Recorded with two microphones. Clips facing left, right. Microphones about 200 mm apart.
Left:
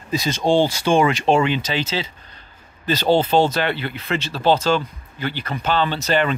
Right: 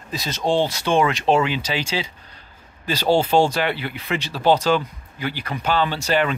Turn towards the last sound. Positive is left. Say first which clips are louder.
# left 1 dB
turn(degrees=-5)  # may be behind; listen again after turning